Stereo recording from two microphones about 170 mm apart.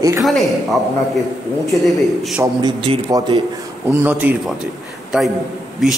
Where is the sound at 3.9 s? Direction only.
10° right (ahead or behind).